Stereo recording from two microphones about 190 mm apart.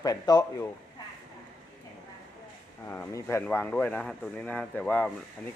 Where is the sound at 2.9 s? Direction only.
15° left (ahead or behind).